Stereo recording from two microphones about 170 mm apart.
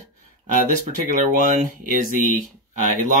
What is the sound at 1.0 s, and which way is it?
Speech, 50° right (ahead or behind).